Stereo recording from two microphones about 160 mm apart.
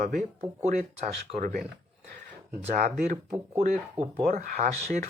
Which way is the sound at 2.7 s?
60° right (ahead or behind).